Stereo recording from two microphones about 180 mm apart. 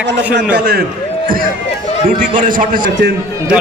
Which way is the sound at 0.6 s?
60° right (ahead or behind).